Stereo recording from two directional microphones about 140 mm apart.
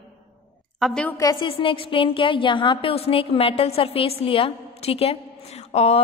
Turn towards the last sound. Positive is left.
turn(degrees=50)  # may be behind; listen again after turning